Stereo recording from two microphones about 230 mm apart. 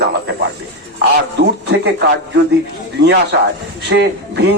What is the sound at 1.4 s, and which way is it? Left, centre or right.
A man's voice, right.